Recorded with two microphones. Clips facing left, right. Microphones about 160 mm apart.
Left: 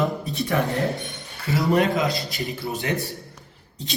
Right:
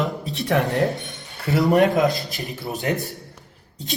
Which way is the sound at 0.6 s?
Centre (ahead or behind).